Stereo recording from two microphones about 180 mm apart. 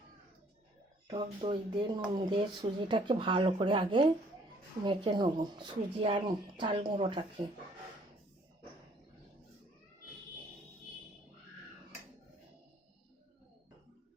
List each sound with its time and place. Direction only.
1.0 s speech: 30° right (ahead or behind)